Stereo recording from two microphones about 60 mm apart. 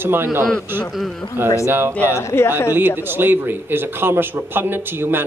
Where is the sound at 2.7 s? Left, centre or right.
Right.